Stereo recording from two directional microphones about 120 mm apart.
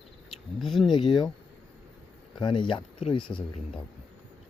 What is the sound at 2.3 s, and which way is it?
Speech, 40° left (ahead or behind).